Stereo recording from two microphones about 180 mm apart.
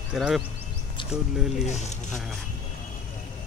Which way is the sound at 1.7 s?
40° left (ahead or behind).